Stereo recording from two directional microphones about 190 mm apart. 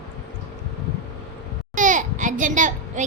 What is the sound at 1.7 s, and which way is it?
Babbling, 40° right (ahead or behind).